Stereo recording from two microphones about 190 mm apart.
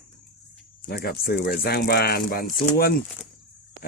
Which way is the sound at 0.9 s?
55° left (ahead or behind).